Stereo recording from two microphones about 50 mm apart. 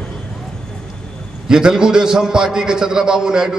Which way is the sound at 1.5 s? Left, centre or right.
Centre.